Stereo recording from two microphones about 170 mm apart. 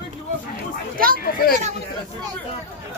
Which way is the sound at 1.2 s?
60° left (ahead or behind).